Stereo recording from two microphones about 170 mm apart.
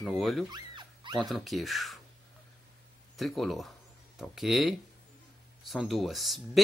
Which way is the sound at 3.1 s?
Centre (ahead or behind).